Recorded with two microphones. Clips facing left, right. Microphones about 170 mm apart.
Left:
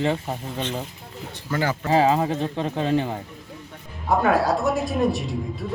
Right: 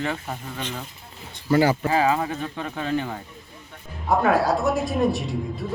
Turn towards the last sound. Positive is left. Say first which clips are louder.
# even
turn(degrees=0)  # may be behind; listen again after turning